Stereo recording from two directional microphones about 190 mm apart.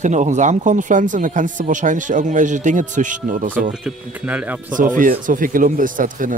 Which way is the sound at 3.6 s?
5° right (ahead or behind).